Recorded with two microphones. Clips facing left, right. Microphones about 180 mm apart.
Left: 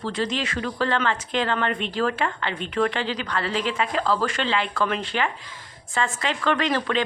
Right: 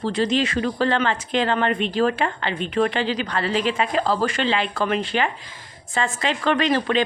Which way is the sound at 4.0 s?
35° right (ahead or behind).